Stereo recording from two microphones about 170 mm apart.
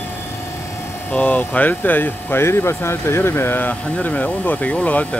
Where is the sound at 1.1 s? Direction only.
10° left (ahead or behind).